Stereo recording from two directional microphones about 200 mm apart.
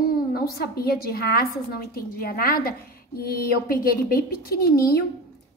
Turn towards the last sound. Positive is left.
turn(degrees=50)  # may be behind; listen again after turning